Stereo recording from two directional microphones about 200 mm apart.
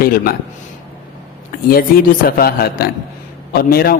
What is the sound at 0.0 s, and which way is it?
Speech, 50° left (ahead or behind).